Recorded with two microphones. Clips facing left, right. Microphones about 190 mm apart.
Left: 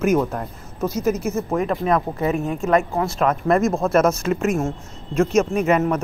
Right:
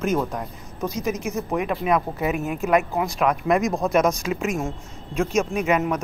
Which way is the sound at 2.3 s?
35° left (ahead or behind).